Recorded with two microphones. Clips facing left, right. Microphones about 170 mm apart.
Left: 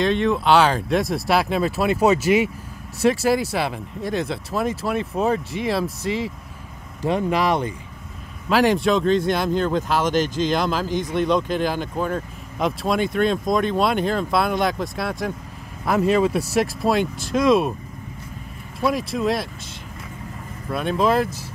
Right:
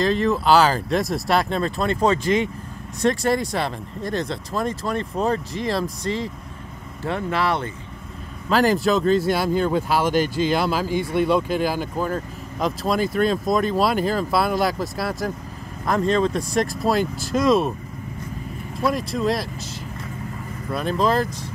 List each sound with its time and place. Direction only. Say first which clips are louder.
0.0 s speech: even; centre (ahead or behind)
7.0 s speech: left 3 dB; 15° left (ahead or behind)
8.5 s speech: left 1 dB; centre (ahead or behind)
18.8 s speech: left 1 dB; centre (ahead or behind)
20.7 s speech: left 1 dB; centre (ahead or behind)